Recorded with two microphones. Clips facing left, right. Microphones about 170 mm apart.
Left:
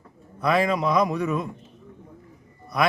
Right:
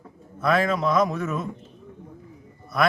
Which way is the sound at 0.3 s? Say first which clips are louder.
Even; centre (ahead or behind).